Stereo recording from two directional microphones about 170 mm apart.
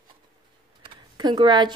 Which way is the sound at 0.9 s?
25° right (ahead or behind).